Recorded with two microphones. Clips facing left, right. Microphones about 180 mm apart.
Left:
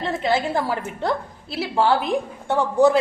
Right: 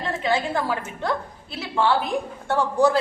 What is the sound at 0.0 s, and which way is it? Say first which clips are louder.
A woman's voice: left 2 dB; 30° left (ahead or behind).